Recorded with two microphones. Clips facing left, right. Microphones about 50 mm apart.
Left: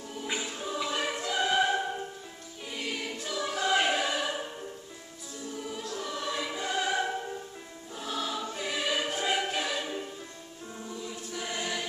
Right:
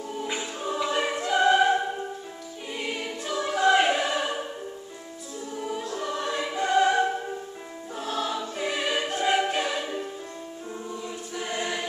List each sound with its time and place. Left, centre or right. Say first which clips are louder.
0.4 s choir: right 5 dB; centre
1.2 s opera: right 7 dB; centre
2.7 s choir: right 3 dB; centre
5.6 s choir: right 6 dB; centre